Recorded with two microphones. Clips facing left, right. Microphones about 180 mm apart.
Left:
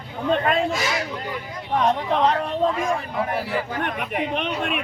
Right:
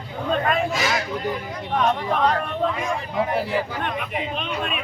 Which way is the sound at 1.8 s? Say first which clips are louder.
Left 1 dB; 25° left (ahead or behind).